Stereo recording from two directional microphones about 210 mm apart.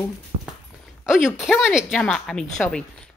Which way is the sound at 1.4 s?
5° right (ahead or behind).